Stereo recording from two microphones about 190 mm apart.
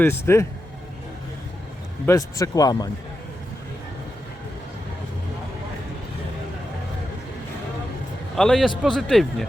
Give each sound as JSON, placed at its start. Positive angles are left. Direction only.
{"t": 0.0, "sound": "a man's voice", "side_deg": 15}
{"t": 2.0, "sound": "speech", "side_deg": 15}
{"t": 8.4, "sound": "speech", "side_deg": 0}